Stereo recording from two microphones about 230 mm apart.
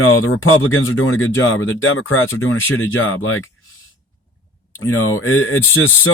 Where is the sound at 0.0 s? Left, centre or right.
Left.